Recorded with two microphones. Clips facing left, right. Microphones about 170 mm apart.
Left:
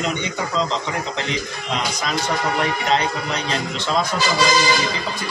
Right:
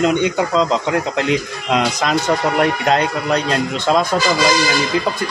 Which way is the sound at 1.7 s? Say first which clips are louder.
Right 8 dB; 55° right (ahead or behind).